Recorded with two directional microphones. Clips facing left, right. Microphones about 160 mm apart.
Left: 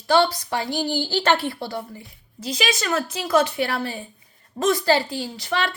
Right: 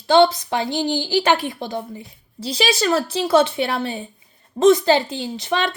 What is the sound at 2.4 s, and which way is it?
A woman's voice, 30° right (ahead or behind).